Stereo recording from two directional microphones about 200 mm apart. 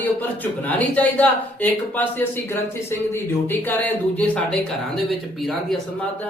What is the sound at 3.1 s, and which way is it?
Speech, 10° left (ahead or behind).